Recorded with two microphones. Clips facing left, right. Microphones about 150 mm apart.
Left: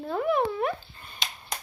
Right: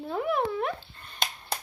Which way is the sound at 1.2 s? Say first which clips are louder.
Right 4 dB; 50° right (ahead or behind).